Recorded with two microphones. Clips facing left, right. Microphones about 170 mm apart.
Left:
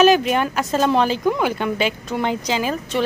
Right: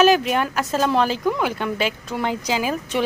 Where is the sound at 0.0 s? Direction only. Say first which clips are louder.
Left 2 dB; centre (ahead or behind).